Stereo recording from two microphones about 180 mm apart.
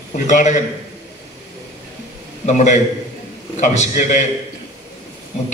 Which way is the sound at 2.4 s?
40° left (ahead or behind).